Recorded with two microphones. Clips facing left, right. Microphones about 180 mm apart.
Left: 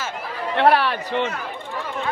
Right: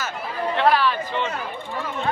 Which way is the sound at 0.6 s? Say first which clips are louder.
Left 2 dB; 65° left (ahead or behind).